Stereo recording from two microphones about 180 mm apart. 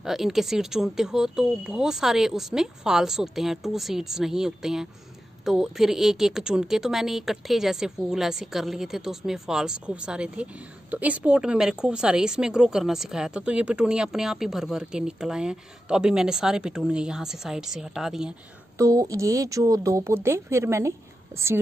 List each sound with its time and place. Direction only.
0.0 s speech: centre (ahead or behind)
18.8 s speech: 20° right (ahead or behind)